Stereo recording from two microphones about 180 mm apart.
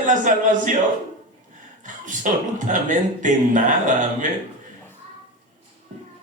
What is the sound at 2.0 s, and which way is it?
A man's voice, 45° right (ahead or behind).